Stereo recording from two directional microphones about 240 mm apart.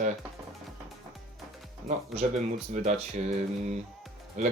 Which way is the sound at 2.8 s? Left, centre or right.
Right.